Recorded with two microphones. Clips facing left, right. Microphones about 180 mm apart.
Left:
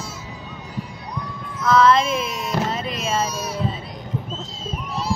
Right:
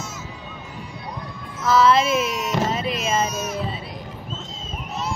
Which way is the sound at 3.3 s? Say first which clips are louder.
Right 1 dB; 35° left (ahead or behind).